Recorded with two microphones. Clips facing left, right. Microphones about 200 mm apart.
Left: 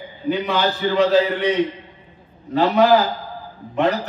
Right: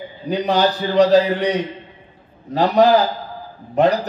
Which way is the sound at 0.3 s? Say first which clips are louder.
Right 3 dB; 35° right (ahead or behind).